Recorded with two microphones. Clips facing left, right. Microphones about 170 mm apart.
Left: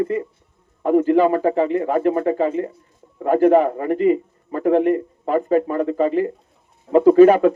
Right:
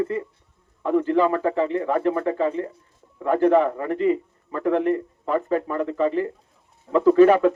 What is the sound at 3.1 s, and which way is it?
A man's voice, 35° left (ahead or behind).